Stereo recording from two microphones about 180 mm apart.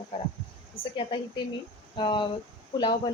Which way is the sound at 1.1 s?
25° left (ahead or behind).